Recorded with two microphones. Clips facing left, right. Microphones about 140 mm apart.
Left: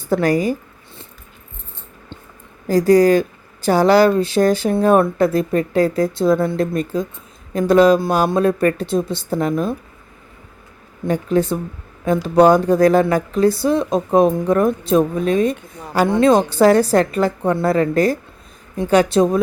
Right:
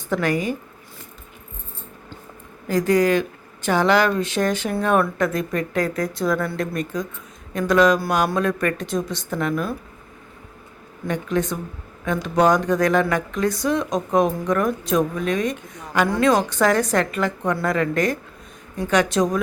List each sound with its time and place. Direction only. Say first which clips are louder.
0.1 s a woman's voice: left 5 dB; 35° left (ahead or behind)
2.6 s a woman's voice: left 6 dB; 35° left (ahead or behind)
11.0 s a woman's voice: left 6 dB; 35° left (ahead or behind)